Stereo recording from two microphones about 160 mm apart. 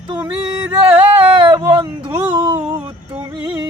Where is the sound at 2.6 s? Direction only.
10° right (ahead or behind).